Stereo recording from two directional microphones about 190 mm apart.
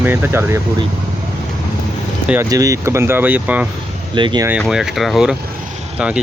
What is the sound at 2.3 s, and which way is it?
Cutlery, 15° right (ahead or behind).